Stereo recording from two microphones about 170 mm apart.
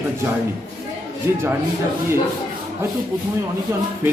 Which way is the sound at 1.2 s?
15° right (ahead or behind).